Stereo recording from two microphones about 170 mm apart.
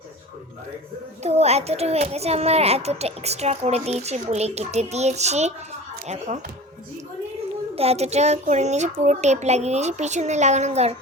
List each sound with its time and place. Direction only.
1.2 s a child's voice: 40° right (ahead or behind)
7.8 s a child's voice: 40° right (ahead or behind)